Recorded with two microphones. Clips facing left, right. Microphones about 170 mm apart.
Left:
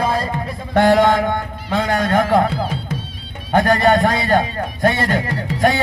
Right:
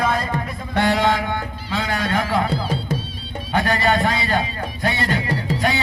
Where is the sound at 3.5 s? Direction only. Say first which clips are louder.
Left 5 dB; 45° left (ahead or behind).